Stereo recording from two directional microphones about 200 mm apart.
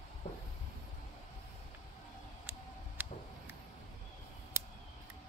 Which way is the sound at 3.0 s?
10° right (ahead or behind).